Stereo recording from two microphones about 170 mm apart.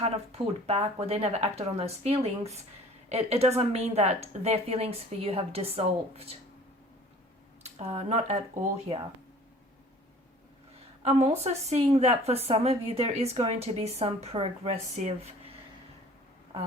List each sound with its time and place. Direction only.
0.0 s speech: 35° right (ahead or behind)
7.6 s speech: 40° right (ahead or behind)
11.0 s speech: 40° right (ahead or behind)